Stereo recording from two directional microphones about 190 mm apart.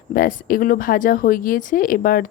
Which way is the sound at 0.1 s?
45° left (ahead or behind).